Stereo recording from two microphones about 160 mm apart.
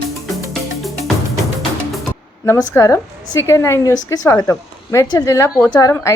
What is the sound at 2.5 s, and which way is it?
Speech, 20° left (ahead or behind).